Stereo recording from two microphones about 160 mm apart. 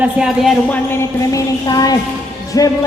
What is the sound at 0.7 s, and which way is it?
Music, 15° left (ahead or behind).